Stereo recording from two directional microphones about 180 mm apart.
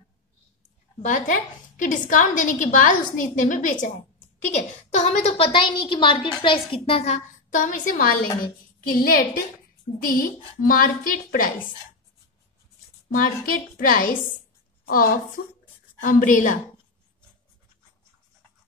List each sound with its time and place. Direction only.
1.0 s a woman's voice: 45° left (ahead or behind)
13.1 s a woman's voice: 50° left (ahead or behind)